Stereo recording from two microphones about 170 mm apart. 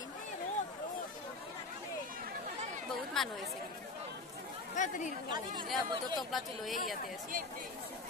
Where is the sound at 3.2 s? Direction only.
Centre (ahead or behind).